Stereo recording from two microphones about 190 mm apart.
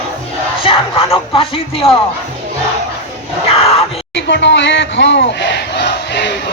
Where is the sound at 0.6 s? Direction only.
30° left (ahead or behind).